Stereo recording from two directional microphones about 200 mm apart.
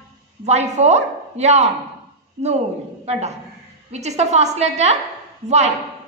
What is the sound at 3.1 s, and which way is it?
Speech, 35° right (ahead or behind).